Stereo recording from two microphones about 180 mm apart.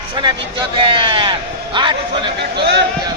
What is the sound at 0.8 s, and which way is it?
A man's voice, 25° right (ahead or behind).